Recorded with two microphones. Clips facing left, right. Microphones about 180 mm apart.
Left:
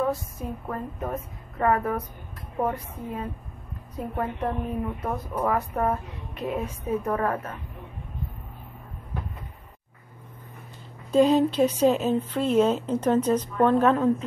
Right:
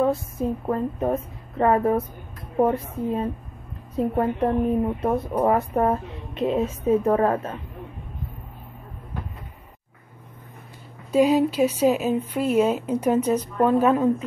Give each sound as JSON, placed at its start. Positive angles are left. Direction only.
{"t": 0.0, "sound": "a woman's voice", "side_deg": -25}
{"t": 11.1, "sound": "speech", "side_deg": -10}